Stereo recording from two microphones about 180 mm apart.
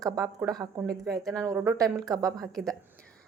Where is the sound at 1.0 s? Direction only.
Centre (ahead or behind).